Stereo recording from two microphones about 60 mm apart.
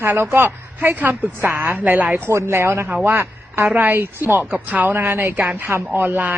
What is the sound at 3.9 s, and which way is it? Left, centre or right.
Speech, right.